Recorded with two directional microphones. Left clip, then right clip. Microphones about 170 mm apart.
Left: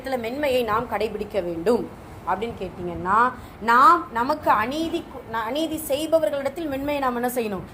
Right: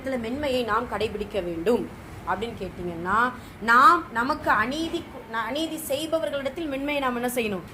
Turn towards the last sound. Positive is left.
turn(degrees=10)  # may be behind; listen again after turning